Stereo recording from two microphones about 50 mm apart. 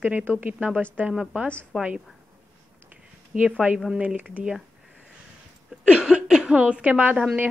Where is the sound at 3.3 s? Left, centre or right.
Right.